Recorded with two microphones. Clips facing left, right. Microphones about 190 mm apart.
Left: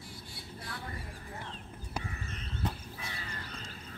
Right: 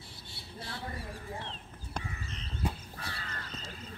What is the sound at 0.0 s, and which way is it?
Vehicle, 25° right (ahead or behind).